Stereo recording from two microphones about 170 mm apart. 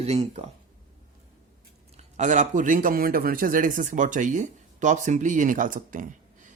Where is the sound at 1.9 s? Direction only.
45° right (ahead or behind).